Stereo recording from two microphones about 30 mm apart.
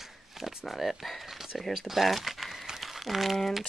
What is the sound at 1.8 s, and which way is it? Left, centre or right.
Speech, centre.